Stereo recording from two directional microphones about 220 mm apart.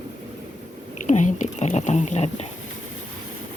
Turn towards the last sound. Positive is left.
turn(degrees=30)  # may be behind; listen again after turning